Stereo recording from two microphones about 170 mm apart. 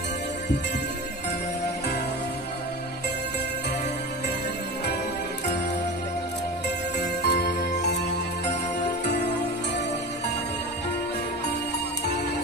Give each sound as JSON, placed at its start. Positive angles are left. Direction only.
{"t": 7.0, "sound": "jingle bell", "side_deg": 80}
{"t": 9.0, "sound": "music", "side_deg": 75}